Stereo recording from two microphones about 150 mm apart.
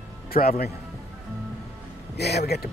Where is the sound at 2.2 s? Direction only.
90° left.